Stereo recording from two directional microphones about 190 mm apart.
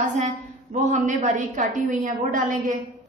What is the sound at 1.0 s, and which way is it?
A woman's voice, 40° right (ahead or behind).